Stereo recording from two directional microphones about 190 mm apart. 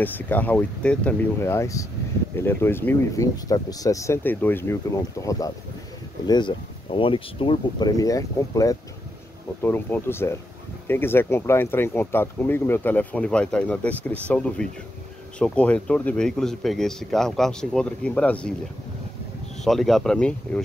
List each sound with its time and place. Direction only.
0.0 s speech: 10° left (ahead or behind)
19.6 s speech: centre (ahead or behind)